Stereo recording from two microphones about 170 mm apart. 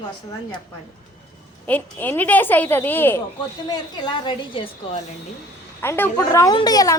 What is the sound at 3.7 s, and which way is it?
A woman's voice, 25° left (ahead or behind).